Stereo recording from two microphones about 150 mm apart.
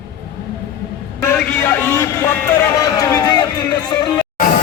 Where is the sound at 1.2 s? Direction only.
15° left (ahead or behind).